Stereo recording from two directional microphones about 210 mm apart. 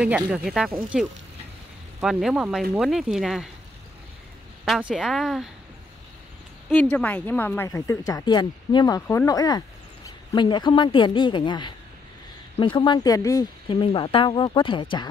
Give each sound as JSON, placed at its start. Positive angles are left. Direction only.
{"t": 0.0, "sound": "a woman's voice", "side_deg": -5}
{"t": 4.6, "sound": "a woman's voice", "side_deg": 0}
{"t": 6.7, "sound": "speech", "side_deg": 10}